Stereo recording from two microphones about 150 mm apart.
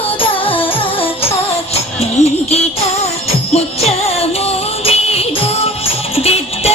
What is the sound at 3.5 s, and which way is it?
Music, 45° left (ahead or behind).